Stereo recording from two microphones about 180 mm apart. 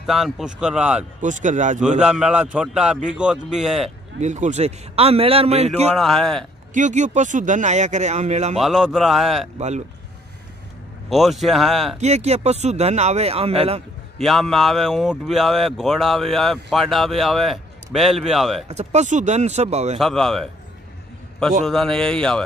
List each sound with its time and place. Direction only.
0.0 s speech: centre (ahead or behind)
1.2 s speech: 45° right (ahead or behind)
2.0 s speech: 5° right (ahead or behind)
4.2 s speech: 40° right (ahead or behind)
5.9 s speech: centre (ahead or behind)
6.7 s speech: 45° right (ahead or behind)
8.5 s speech: centre (ahead or behind)
9.6 s speech: 40° right (ahead or behind)
11.1 s speech: centre (ahead or behind)
12.0 s speech: 40° right (ahead or behind)
14.1 s speech: centre (ahead or behind)
18.7 s speech: 40° right (ahead or behind)
20.0 s speech: centre (ahead or behind)
21.6 s speech: 5° left (ahead or behind)